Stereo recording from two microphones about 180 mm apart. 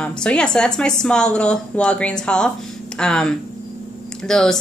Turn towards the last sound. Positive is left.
turn(degrees=5)  # may be behind; listen again after turning